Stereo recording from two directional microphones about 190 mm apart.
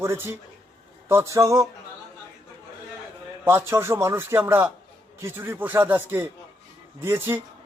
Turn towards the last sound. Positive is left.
turn(degrees=-10)  # may be behind; listen again after turning